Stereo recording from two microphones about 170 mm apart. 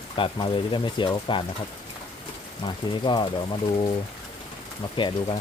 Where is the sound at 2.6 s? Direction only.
30° left (ahead or behind).